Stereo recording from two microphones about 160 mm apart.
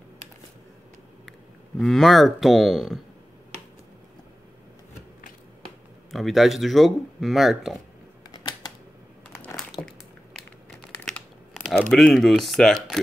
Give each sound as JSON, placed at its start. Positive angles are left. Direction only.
{"t": 1.8, "sound": "speech", "side_deg": 0}
{"t": 6.1, "sound": "speech", "side_deg": 0}
{"t": 8.3, "sound": "typewriter", "side_deg": 25}
{"t": 9.3, "sound": "crumpling", "side_deg": 10}
{"t": 11.7, "sound": "speech", "side_deg": 5}